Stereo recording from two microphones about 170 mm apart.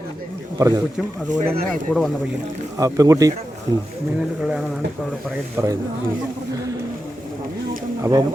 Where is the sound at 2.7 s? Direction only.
20° right (ahead or behind).